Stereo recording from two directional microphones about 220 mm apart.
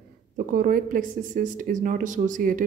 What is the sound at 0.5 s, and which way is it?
Speech, 40° right (ahead or behind).